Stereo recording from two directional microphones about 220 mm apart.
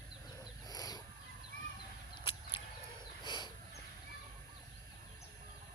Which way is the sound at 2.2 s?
25° left (ahead or behind).